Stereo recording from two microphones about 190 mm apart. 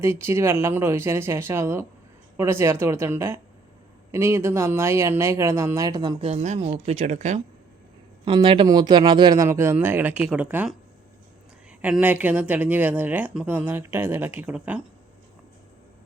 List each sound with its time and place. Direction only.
0.0 s speech: 15° right (ahead or behind); by 7.4 s 40° right (ahead or behind)
8.2 s speech: 25° right (ahead or behind); by 10.8 s 10° right (ahead or behind)
11.8 s speech: 10° right (ahead or behind)